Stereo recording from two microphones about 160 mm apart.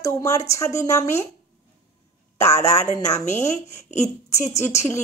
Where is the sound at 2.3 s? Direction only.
20° left (ahead or behind).